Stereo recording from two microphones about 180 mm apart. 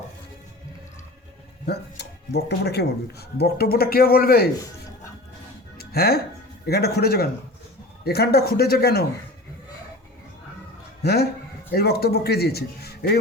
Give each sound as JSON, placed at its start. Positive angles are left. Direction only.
{"t": 1.6, "sound": "speech", "side_deg": 65}
{"t": 5.7, "sound": "music", "side_deg": 60}
{"t": 6.7, "sound": "speech", "side_deg": 60}
{"t": 11.0, "sound": "speech", "side_deg": 60}